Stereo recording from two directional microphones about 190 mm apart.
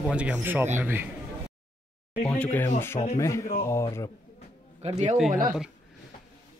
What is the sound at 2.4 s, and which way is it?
Speech, 10° left (ahead or behind).